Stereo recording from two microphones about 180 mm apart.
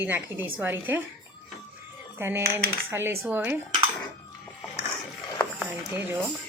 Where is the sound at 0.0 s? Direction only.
10° right (ahead or behind).